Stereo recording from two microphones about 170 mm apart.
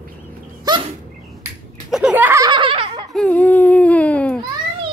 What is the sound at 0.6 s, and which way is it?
Bird, 30° right (ahead or behind).